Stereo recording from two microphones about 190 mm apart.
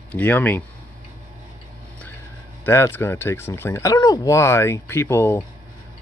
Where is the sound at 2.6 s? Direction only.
10° left (ahead or behind).